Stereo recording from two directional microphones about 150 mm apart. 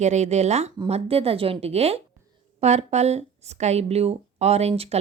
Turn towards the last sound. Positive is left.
turn(degrees=-45)  # may be behind; listen again after turning